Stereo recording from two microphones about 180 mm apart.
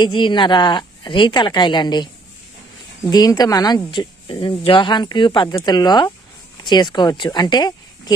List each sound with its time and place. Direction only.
0.0 s a woman's voice: 25° left (ahead or behind)
3.1 s a woman's voice: 20° left (ahead or behind)